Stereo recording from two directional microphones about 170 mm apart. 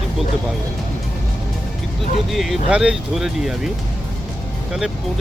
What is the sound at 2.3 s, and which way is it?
Speech, centre (ahead or behind).